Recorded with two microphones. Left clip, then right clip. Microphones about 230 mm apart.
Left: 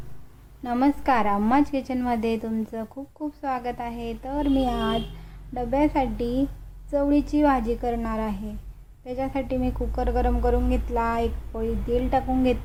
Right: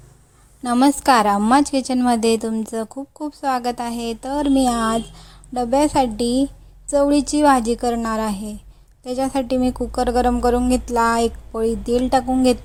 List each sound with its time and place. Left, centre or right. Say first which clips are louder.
0.6 s a woman's voice: right 7 dB; right